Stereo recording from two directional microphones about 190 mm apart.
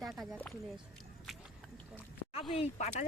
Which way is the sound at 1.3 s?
Centre (ahead or behind).